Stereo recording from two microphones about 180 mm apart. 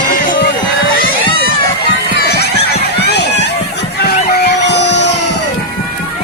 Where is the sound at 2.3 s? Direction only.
65° left (ahead or behind).